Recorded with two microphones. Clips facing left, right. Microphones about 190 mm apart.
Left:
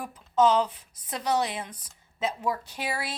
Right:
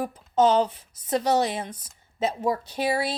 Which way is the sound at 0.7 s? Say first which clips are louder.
Right 11 dB; 40° right (ahead or behind).